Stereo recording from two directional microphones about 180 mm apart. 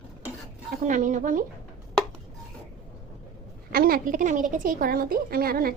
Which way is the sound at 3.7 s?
55° right (ahead or behind).